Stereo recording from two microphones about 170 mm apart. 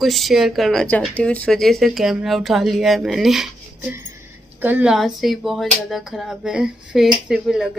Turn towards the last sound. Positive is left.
turn(degrees=-5)  # may be behind; listen again after turning